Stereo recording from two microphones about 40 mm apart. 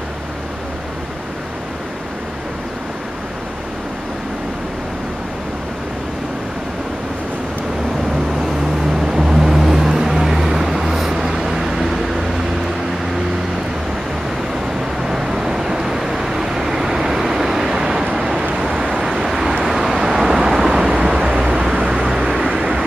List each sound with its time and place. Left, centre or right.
8.9 s vehicle: centre
15.0 s vehicle: centre